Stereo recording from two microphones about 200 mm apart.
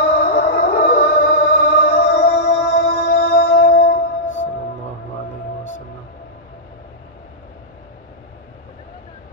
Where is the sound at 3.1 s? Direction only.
45° left (ahead or behind).